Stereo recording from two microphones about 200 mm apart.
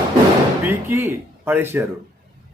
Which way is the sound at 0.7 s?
10° right (ahead or behind).